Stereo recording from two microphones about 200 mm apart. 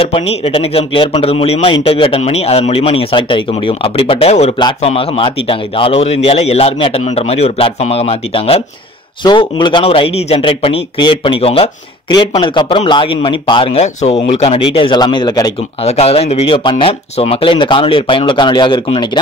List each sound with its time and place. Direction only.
0.0 s speech: 30° left (ahead or behind)
15.8 s speech: 30° left (ahead or behind)